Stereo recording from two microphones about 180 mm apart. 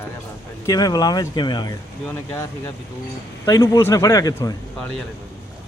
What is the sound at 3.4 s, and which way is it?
Speech, 20° left (ahead or behind).